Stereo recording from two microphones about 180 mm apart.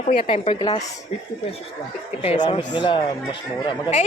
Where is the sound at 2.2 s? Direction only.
30° left (ahead or behind).